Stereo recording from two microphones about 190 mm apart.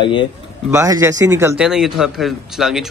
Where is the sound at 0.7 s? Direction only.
15° right (ahead or behind).